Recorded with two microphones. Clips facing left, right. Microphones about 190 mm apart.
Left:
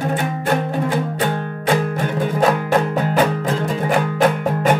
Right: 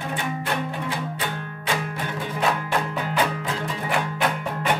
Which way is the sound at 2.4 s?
45° left (ahead or behind).